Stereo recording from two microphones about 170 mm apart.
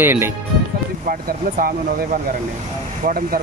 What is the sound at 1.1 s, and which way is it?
Speech, 55° right (ahead or behind).